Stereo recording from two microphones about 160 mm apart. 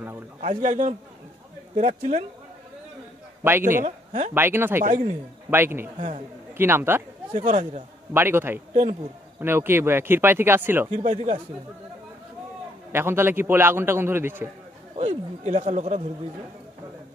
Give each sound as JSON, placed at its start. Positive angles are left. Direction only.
{"t": 0.4, "sound": "speech", "side_deg": -50}
{"t": 3.4, "sound": "a man's voice", "side_deg": -15}
{"t": 3.8, "sound": "speech", "side_deg": -50}
{"t": 4.3, "sound": "a man's voice", "side_deg": -15}
{"t": 4.8, "sound": "speech", "side_deg": -55}
{"t": 5.5, "sound": "a man's voice", "side_deg": -15}
{"t": 5.9, "sound": "speech", "side_deg": -45}
{"t": 6.5, "sound": "a man's voice", "side_deg": -15}
{"t": 7.3, "sound": "speech", "side_deg": -45}
{"t": 8.1, "sound": "a man's voice", "side_deg": -15}
{"t": 11.0, "sound": "speech", "side_deg": -40}
{"t": 12.9, "sound": "a man's voice", "side_deg": -15}
{"t": 15.0, "sound": "speech", "side_deg": -45}